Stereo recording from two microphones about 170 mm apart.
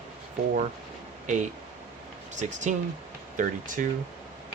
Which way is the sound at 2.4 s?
45° right (ahead or behind).